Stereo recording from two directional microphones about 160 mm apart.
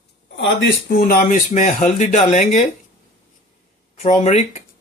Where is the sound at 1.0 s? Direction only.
60° left (ahead or behind).